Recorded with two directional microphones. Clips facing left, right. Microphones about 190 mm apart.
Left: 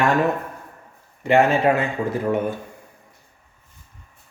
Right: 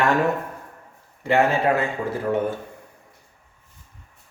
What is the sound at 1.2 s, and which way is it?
Speech, 15° left (ahead or behind).